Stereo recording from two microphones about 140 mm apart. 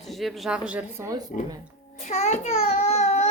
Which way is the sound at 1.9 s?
55° left (ahead or behind).